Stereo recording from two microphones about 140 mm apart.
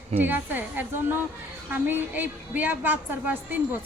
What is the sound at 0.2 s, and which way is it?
A woman's voice, 15° right (ahead or behind).